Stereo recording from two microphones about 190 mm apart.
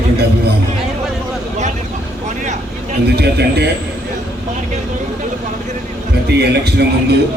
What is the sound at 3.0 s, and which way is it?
Speech, 60° right (ahead or behind).